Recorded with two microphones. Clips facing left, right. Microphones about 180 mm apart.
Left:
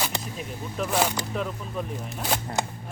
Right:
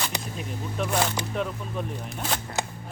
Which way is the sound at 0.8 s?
Centre (ahead or behind).